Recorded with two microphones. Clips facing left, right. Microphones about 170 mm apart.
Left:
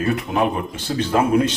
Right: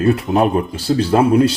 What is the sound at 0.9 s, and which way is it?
Speech, 35° right (ahead or behind).